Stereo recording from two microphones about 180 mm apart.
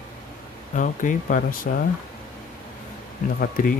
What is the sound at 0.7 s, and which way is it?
Speech, 45° left (ahead or behind).